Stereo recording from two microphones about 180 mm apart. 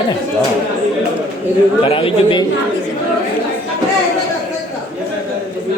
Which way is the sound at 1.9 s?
30° left (ahead or behind).